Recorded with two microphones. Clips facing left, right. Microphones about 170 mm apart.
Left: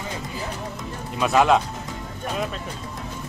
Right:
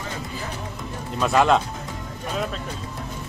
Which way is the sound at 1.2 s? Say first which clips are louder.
Even; 5° left (ahead or behind).